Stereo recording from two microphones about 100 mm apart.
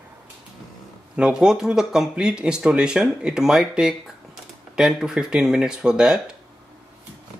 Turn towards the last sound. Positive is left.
turn(degrees=-5)  # may be behind; listen again after turning